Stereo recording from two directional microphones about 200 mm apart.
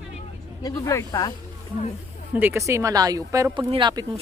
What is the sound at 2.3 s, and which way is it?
Speech, 10° right (ahead or behind).